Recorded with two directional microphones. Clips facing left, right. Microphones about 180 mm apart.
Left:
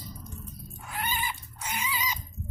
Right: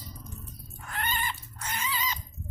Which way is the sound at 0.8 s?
10° left (ahead or behind).